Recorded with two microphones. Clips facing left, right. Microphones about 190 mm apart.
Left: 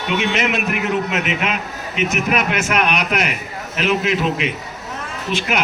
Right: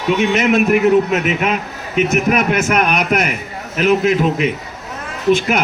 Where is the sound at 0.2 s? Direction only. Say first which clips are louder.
Right 7 dB; 40° right (ahead or behind).